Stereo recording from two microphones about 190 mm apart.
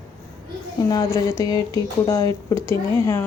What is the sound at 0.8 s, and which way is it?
A woman's voice, 20° left (ahead or behind).